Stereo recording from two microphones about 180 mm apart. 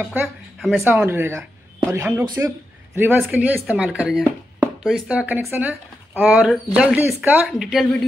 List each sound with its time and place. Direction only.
0.0 s speech: 10° right (ahead or behind)
0.8 s a woman's voice: 10° right (ahead or behind)